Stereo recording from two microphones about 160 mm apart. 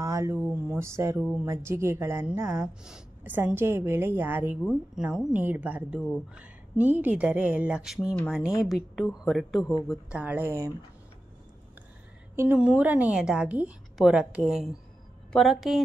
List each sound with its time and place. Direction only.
0.0 s a woman's voice: 20° right (ahead or behind)
12.4 s a woman's voice: 10° right (ahead or behind)